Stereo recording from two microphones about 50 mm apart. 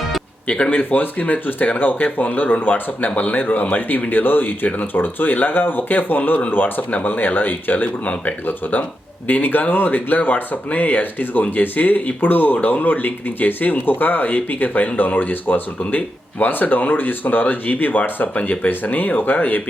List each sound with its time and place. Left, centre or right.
0.4 s speech: left
0.7 s speech: left
8.1 s speech: left
8.4 s speech: left